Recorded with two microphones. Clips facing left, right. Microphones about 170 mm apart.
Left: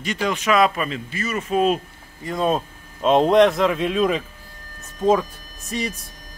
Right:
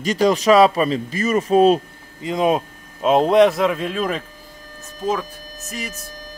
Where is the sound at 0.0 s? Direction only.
40° right (ahead or behind).